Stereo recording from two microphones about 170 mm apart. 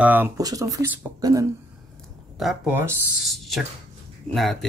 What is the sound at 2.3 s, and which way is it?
Speech, centre (ahead or behind).